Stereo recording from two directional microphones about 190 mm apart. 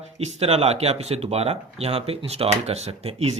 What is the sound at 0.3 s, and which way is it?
Speech, 30° right (ahead or behind).